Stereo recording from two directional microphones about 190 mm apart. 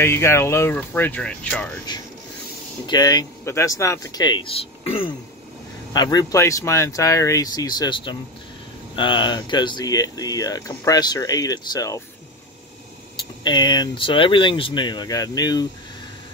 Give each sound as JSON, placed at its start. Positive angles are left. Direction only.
{"t": 0.0, "sound": "speech", "side_deg": 15}
{"t": 1.9, "sound": "speech", "side_deg": 20}
{"t": 5.9, "sound": "speech", "side_deg": 20}
{"t": 13.4, "sound": "speech", "side_deg": 25}